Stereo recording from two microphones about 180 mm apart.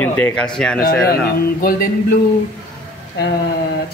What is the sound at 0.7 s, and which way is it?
Speech, 60° left (ahead or behind).